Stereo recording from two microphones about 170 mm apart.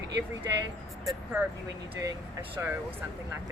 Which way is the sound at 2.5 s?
10° right (ahead or behind).